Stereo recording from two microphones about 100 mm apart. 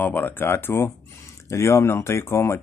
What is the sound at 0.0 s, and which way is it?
Speech, 20° left (ahead or behind).